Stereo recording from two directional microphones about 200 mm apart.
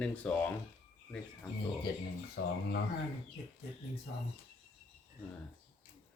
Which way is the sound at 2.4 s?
60° left (ahead or behind).